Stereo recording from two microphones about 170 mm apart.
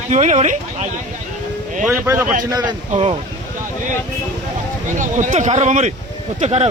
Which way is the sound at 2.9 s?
40° right (ahead or behind).